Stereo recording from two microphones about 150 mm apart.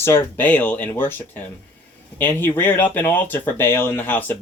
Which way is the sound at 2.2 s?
15° left (ahead or behind).